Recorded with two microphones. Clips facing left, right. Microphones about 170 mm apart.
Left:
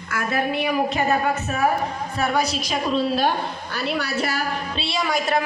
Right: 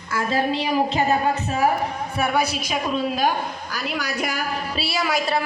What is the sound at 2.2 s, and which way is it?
Speech, 10° right (ahead or behind).